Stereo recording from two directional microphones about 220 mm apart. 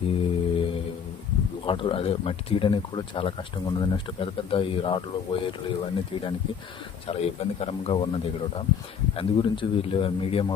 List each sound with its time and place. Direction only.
0.2 s mantra: 25° left (ahead or behind)
1.6 s speech: 25° left (ahead or behind)
9.1 s speech: 25° left (ahead or behind)